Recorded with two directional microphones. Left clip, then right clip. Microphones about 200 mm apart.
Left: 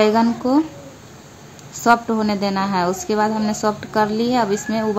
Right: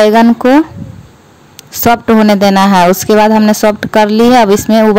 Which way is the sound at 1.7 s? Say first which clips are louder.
Right 7 dB; 50° right (ahead or behind).